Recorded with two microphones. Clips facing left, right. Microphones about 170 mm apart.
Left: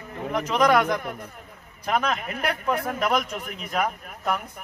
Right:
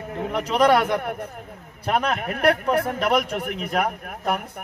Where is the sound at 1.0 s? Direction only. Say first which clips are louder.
Right 5 dB; 60° right (ahead or behind).